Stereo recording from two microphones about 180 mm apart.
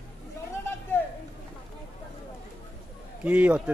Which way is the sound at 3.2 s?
10° right (ahead or behind).